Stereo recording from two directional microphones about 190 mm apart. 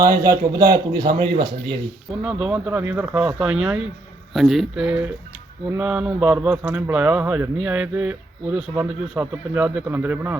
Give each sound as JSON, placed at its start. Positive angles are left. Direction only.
{"t": 0.0, "sound": "speech", "side_deg": -15}
{"t": 2.2, "sound": "speech", "side_deg": -5}